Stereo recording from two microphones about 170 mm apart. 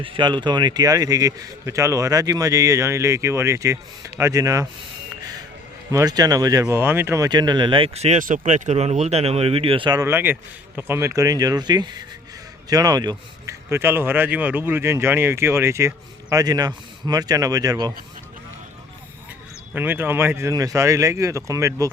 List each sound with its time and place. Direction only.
0.0 s a man's voice: 30° right (ahead or behind)
5.9 s a man's voice: 20° right (ahead or behind)
19.7 s a man's voice: 10° right (ahead or behind)